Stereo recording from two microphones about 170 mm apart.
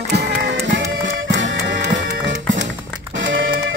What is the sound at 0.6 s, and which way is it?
Music, 90° right.